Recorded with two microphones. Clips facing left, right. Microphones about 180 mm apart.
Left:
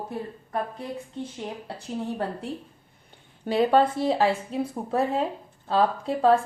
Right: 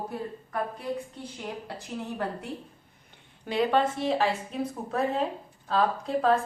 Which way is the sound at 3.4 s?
35° left (ahead or behind).